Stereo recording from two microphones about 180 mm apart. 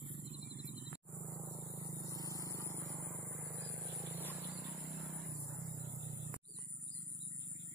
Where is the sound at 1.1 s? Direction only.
10° left (ahead or behind).